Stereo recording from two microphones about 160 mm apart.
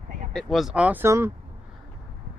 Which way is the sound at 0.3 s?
Centre (ahead or behind).